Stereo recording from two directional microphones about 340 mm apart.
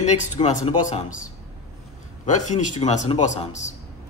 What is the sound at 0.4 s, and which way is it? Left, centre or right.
Speech, centre.